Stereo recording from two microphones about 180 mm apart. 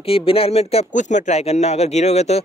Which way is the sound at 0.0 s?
30° left (ahead or behind).